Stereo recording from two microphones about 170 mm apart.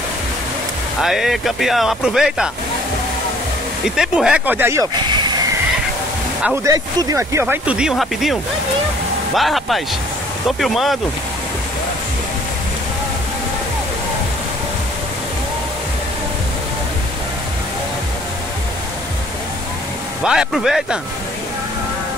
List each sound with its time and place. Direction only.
1.0 s speech: centre (ahead or behind)
3.8 s speech: 5° right (ahead or behind)
4.9 s vehicle: 25° right (ahead or behind)
6.4 s speech: 10° right (ahead or behind)
6.7 s speech: 20° right (ahead or behind); by 11.0 s centre (ahead or behind)
20.2 s speech: centre (ahead or behind)